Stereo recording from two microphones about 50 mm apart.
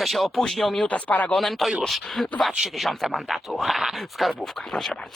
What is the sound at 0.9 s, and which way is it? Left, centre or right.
Speech, left.